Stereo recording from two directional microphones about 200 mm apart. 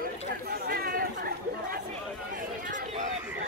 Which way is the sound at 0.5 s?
50° right (ahead or behind).